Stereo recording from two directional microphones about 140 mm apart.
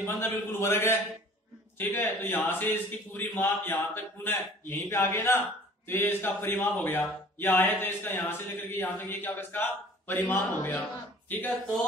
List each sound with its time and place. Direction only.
0.0 s a man's voice: 15° left (ahead or behind)